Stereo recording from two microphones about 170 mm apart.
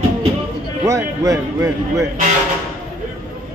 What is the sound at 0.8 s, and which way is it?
Speech, 20° right (ahead or behind).